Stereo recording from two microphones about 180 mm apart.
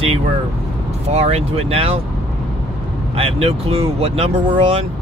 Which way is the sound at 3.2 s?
35° right (ahead or behind).